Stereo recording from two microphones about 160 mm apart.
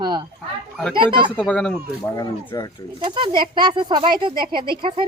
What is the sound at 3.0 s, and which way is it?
Speech, 30° right (ahead or behind).